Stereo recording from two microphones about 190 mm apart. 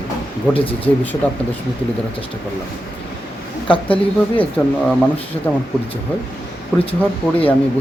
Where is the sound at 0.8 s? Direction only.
10° left (ahead or behind).